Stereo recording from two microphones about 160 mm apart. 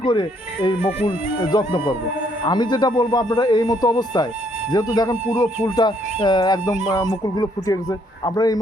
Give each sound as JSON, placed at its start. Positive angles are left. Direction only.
{"t": 0.0, "sound": "speech", "side_deg": 30}
{"t": 5.6, "sound": "speech", "side_deg": 25}